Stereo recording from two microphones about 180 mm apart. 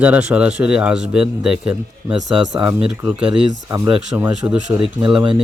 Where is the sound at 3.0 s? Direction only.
5° right (ahead or behind).